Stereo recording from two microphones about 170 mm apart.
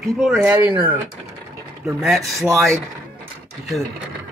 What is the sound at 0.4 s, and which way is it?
Speech, 10° right (ahead or behind).